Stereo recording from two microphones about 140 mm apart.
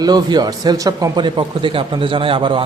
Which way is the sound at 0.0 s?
30° right (ahead or behind).